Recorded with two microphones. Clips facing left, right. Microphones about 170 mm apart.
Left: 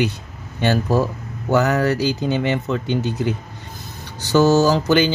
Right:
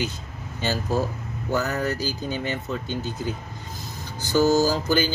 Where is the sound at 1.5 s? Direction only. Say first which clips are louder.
Left 8 dB; 75° left (ahead or behind).